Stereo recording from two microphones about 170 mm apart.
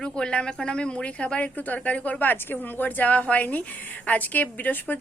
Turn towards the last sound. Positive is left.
turn(degrees=10)  # may be behind; listen again after turning